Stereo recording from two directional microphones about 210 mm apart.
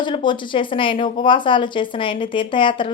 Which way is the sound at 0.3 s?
25° left (ahead or behind).